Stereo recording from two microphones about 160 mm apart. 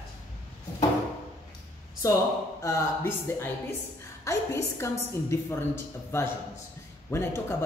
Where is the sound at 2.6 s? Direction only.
15° left (ahead or behind).